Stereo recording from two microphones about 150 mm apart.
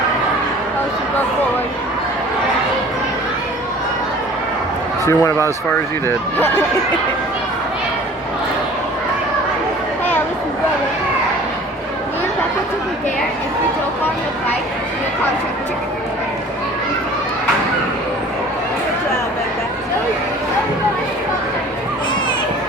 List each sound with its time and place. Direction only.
5.0 s speech: 20° left (ahead or behind)